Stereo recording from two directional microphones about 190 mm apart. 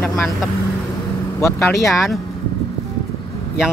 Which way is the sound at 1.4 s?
15° left (ahead or behind).